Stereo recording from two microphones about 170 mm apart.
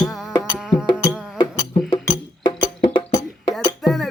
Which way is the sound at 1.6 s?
35° left (ahead or behind).